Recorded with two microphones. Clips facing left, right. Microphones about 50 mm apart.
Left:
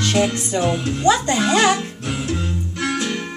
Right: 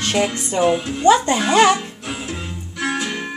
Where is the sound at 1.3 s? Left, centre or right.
Centre.